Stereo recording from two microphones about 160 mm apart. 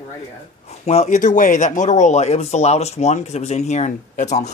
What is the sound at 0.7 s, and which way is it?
Speech, 40° left (ahead or behind).